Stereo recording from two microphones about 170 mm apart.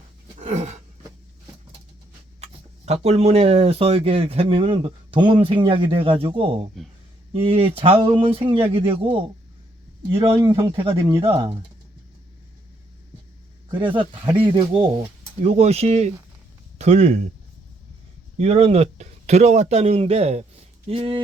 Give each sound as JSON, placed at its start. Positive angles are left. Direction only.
{"t": 0.3, "sound": "a sound", "side_deg": -45}
{"t": 2.4, "sound": "speech", "side_deg": -40}
{"t": 13.7, "sound": "speech", "side_deg": -30}
{"t": 18.3, "sound": "speech", "side_deg": -40}